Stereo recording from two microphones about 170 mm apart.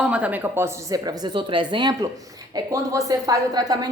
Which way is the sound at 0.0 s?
5° right (ahead or behind).